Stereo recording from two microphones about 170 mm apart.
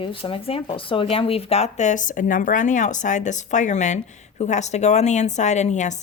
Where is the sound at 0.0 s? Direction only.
30° left (ahead or behind).